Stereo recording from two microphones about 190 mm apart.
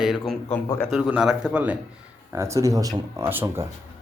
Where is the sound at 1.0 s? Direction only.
5° right (ahead or behind).